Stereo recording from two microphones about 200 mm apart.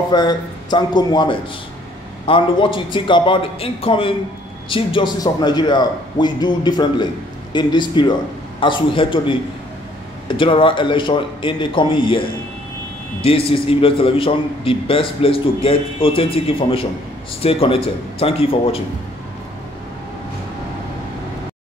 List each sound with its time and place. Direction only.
0.1 s a man's voice: 20° left (ahead or behind)